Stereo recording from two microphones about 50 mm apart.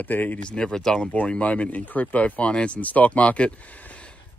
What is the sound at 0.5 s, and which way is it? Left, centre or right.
Speech, centre.